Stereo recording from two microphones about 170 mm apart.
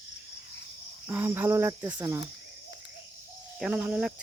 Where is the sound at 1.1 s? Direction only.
10° right (ahead or behind).